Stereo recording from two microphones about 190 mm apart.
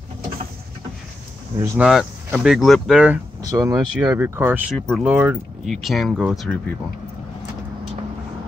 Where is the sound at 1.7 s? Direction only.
5° right (ahead or behind).